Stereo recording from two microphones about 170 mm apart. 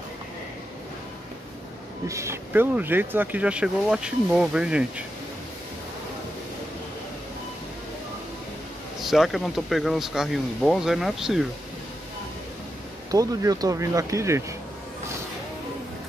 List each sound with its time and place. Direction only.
2.0 s speech: 15° right (ahead or behind)
9.0 s speech: centre (ahead or behind)
13.1 s speech: 20° right (ahead or behind)